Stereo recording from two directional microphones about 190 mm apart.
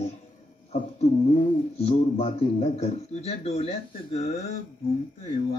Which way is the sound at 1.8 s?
30° left (ahead or behind).